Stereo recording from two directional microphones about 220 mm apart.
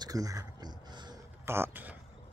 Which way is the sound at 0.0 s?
15° right (ahead or behind).